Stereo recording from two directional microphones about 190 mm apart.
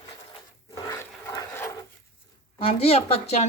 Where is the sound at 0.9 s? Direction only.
20° left (ahead or behind).